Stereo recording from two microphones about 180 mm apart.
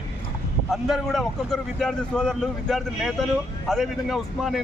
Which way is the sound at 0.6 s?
Centre (ahead or behind).